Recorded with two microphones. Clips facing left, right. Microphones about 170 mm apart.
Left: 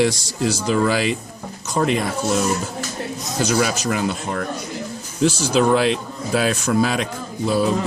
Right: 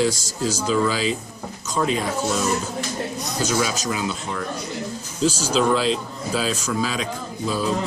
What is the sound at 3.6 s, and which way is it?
Speech, 60° left (ahead or behind).